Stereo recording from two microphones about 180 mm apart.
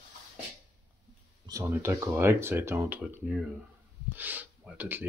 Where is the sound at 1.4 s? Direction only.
15° right (ahead or behind).